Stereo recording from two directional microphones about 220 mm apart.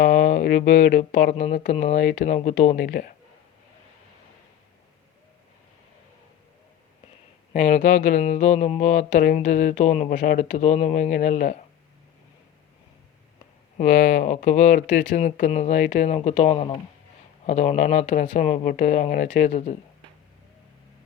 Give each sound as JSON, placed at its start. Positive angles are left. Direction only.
{"t": 0.0, "sound": "speech", "side_deg": 40}
{"t": 7.5, "sound": "speech", "side_deg": 30}
{"t": 13.7, "sound": "speech", "side_deg": 35}